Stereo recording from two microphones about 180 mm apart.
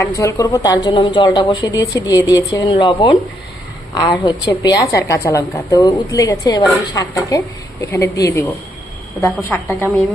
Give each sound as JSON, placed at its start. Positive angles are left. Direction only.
{"t": 0.0, "sound": "a woman's voice", "side_deg": 15}